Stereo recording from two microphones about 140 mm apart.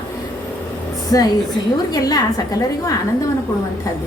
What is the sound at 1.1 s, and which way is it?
A woman's voice, 25° left (ahead or behind).